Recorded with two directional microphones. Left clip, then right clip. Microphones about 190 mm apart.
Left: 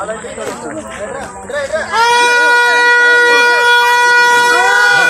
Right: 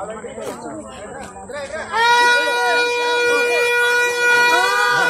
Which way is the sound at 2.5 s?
15° left (ahead or behind).